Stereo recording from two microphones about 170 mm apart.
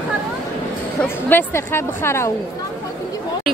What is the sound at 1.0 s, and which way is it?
A woman's voice, 10° left (ahead or behind).